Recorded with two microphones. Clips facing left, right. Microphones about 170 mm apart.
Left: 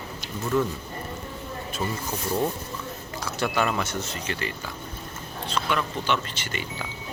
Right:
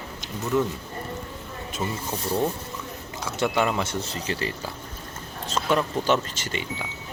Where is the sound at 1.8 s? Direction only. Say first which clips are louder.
Even; 20° right (ahead or behind).